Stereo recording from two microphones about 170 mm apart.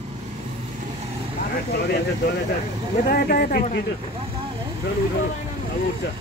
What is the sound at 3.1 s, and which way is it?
Speech, 60° left (ahead or behind).